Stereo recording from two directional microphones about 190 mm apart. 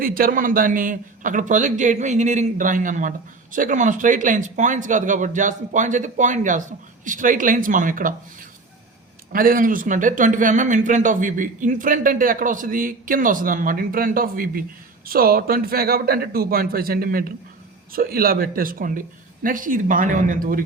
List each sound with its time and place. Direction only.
0.0 s a man's voice: 50° right (ahead or behind)